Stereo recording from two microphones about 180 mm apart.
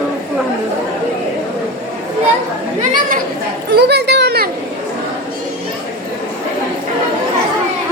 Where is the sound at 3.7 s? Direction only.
65° right (ahead or behind).